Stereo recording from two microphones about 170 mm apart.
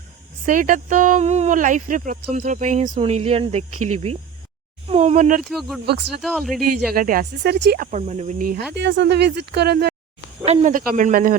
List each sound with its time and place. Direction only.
0.4 s speech: 50° right (ahead or behind)
5.4 s speech: centre (ahead or behind)
5.8 s speech: 75° right (ahead or behind)
6.2 s speech: centre (ahead or behind)
6.9 s speech: 55° right (ahead or behind); by 7.9 s 80° right
7.9 s speech: 40° right (ahead or behind)
8.4 s speech: 60° right (ahead or behind)
8.7 s speech: 90° right; by 9.9 s 70° right (ahead or behind)
10.4 s speech: 40° right (ahead or behind)